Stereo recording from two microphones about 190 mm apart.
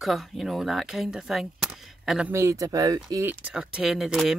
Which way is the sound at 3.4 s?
5° right (ahead or behind).